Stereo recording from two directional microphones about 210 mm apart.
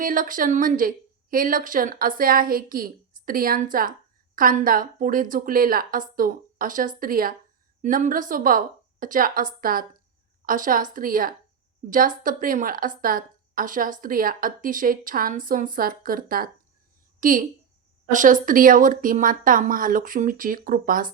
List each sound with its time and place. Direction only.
0.0 s a woman's voice: 40° right (ahead or behind)